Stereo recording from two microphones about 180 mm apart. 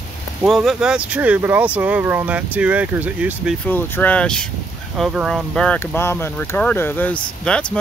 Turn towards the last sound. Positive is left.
turn(degrees=5)  # may be behind; listen again after turning